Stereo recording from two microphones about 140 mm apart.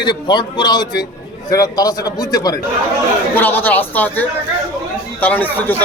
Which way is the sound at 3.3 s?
15° left (ahead or behind).